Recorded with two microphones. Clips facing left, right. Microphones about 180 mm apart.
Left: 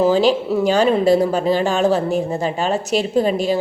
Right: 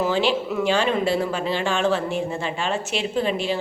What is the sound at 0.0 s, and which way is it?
A woman's voice, 40° left (ahead or behind).